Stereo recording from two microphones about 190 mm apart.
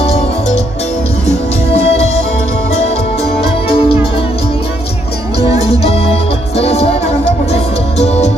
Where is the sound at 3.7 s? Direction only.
30° left (ahead or behind).